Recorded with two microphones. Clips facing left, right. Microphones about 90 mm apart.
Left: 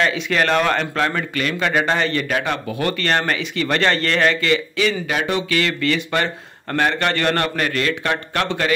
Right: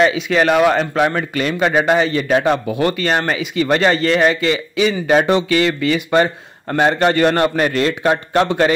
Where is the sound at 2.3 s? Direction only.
30° right (ahead or behind).